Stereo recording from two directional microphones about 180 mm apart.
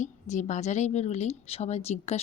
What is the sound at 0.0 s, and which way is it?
A woman's voice, 40° left (ahead or behind).